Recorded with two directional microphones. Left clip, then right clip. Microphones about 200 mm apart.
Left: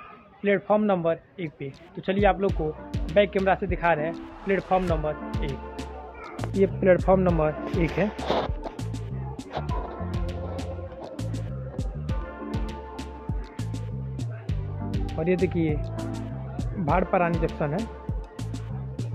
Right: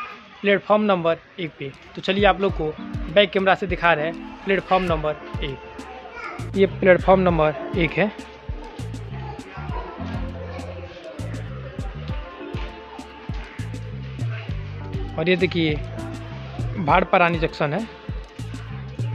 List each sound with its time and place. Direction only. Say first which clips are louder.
0.4 s speech: right 4 dB; 20° right (ahead or behind)
6.6 s speech: right 5 dB; 25° right (ahead or behind)
11.1 s music: right 2 dB; centre (ahead or behind)
15.1 s speech: right 5 dB; 20° right (ahead or behind)
16.0 s music: right 1 dB; centre (ahead or behind)
16.8 s speech: right 6 dB; 20° right (ahead or behind)